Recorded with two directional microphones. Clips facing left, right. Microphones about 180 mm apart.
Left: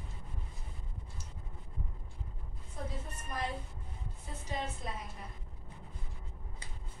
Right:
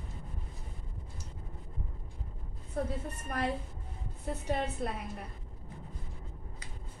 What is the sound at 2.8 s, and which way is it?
Speech, 60° right (ahead or behind).